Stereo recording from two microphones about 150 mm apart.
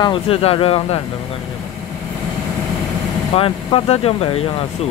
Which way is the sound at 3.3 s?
40° left (ahead or behind).